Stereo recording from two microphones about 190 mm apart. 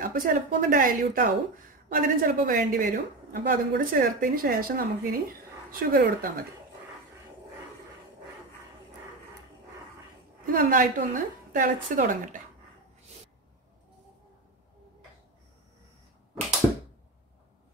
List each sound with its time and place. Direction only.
0.0 s a woman's voice: 50° right (ahead or behind)
10.4 s a woman's voice: 45° right (ahead or behind)